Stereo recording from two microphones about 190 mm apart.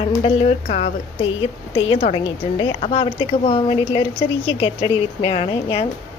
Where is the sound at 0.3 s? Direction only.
30° left (ahead or behind).